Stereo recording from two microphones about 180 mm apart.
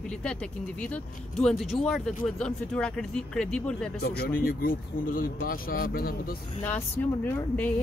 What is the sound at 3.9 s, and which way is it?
Speech, 60° left (ahead or behind).